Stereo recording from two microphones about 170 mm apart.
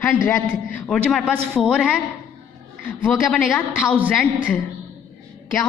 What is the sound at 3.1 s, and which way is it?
Speech, 10° left (ahead or behind).